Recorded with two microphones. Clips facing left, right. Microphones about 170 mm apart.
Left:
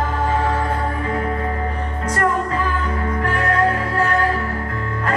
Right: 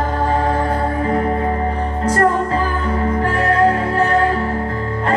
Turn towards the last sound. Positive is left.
turn(degrees=-30)  # may be behind; listen again after turning